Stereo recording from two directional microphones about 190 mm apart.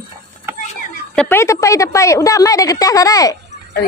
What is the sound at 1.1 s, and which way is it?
Speech, 5° left (ahead or behind).